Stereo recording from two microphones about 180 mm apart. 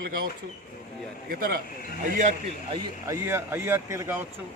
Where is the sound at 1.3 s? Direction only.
55° right (ahead or behind).